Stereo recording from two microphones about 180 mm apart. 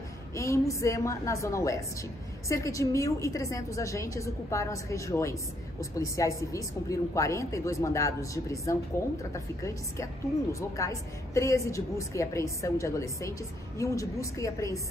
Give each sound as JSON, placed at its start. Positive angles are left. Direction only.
{"t": 0.3, "sound": "a woman's voice", "side_deg": 15}